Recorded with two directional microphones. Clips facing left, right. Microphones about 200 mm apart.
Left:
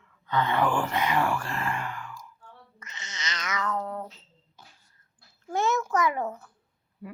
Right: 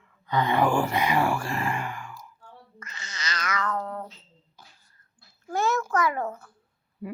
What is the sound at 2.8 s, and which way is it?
Cat, 20° left (ahead or behind).